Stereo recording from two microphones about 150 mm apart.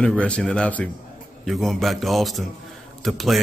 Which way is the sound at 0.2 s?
5° left (ahead or behind).